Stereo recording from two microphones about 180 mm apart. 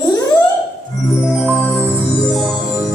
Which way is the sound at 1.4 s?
10° left (ahead or behind).